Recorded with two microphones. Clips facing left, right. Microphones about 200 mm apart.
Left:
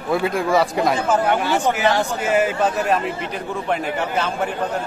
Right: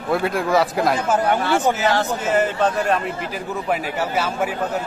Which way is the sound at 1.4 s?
10° left (ahead or behind).